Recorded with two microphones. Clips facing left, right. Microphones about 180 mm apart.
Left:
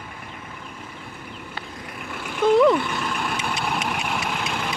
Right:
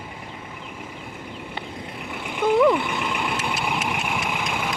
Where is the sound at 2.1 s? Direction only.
20° right (ahead or behind).